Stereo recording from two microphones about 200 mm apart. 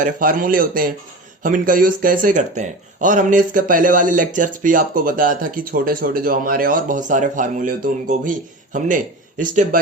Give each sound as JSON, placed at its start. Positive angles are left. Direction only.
{"t": 0.0, "sound": "a man's voice", "side_deg": -45}